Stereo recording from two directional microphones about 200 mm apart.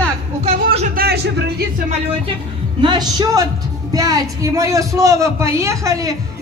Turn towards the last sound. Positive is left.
turn(degrees=-15)  # may be behind; listen again after turning